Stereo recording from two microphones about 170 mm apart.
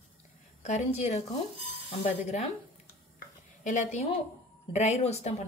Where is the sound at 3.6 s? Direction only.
45° left (ahead or behind).